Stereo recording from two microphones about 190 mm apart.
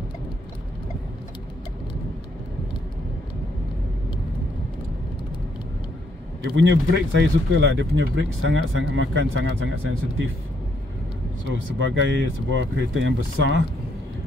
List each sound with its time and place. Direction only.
6.4 s speech: 75° right (ahead or behind)
7.6 s speech: 85° right
11.4 s speech: 90° right